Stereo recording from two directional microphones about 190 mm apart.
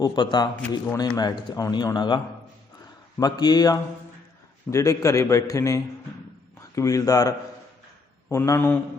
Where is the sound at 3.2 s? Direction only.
20° left (ahead or behind).